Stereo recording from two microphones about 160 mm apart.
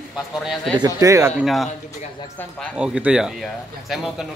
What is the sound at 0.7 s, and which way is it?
Speech, 20° right (ahead or behind).